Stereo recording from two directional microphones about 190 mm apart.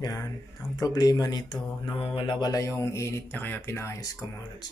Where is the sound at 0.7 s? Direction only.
20° left (ahead or behind).